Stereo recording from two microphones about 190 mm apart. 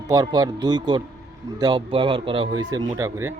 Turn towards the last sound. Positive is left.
turn(degrees=-15)  # may be behind; listen again after turning